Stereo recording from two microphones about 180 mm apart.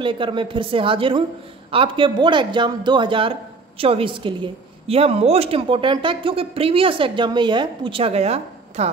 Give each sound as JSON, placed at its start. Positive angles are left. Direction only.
{"t": 0.0, "sound": "a man's voice", "side_deg": -30}